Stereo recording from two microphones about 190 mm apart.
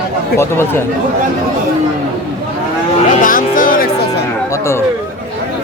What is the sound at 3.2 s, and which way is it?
Music, 45° left (ahead or behind).